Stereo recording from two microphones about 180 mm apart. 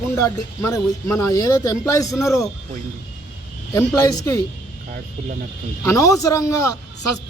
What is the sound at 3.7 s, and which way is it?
Speech, 20° left (ahead or behind).